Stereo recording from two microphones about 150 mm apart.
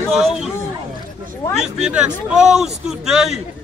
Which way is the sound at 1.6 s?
5° right (ahead or behind).